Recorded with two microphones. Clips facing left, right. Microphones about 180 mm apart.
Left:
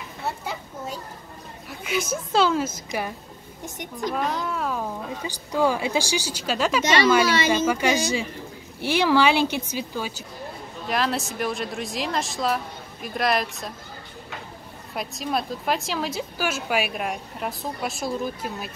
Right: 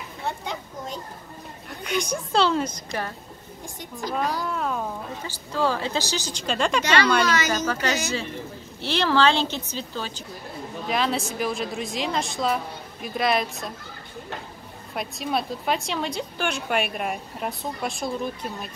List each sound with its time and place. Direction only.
0.2 s a woman's voice: 5° left (ahead or behind)
2.9 s a woman's voice: 15° left (ahead or behind)
4.1 s speech: centre (ahead or behind)
5.2 s a woman's voice: 15° left (ahead or behind)
15.0 s a woman's voice: centre (ahead or behind)